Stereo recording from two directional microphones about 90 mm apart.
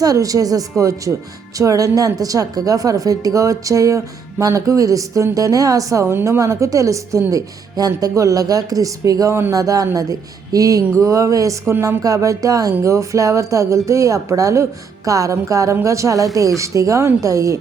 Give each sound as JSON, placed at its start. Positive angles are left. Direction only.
{"t": 0.0, "sound": "a woman's voice", "side_deg": -40}